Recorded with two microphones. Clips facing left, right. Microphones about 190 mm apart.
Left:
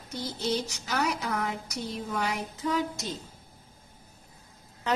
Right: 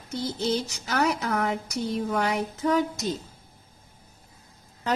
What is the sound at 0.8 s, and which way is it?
A woman's voice, 65° right (ahead or behind).